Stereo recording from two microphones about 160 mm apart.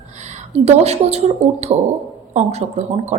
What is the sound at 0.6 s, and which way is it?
A woman's voice, 40° right (ahead or behind).